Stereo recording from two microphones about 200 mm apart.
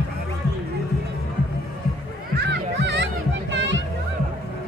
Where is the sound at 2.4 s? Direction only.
60° right (ahead or behind).